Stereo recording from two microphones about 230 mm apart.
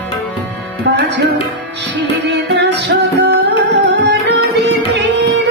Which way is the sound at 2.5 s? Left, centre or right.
Right.